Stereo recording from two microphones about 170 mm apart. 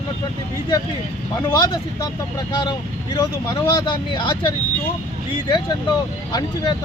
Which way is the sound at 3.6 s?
25° left (ahead or behind).